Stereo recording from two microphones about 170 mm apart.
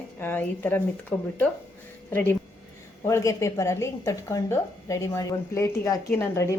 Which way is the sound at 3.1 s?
20° left (ahead or behind).